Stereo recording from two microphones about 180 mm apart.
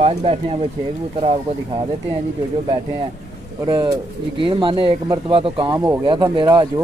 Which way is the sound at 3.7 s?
15° right (ahead or behind).